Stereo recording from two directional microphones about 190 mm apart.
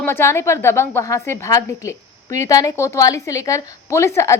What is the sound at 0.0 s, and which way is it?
A woman's voice, 15° left (ahead or behind).